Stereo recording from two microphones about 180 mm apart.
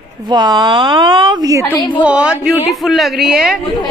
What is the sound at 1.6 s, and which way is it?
Speech, 10° left (ahead or behind).